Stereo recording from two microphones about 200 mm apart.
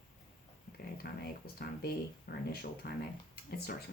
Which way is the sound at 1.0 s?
50° left (ahead or behind).